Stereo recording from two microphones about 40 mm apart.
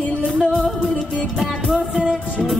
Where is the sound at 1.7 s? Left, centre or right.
Centre.